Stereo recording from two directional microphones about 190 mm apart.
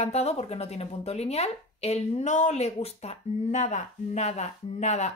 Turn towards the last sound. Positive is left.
turn(degrees=35)  # may be behind; listen again after turning